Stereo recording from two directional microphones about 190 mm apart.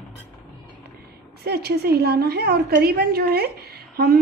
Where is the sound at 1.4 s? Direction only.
55° right (ahead or behind).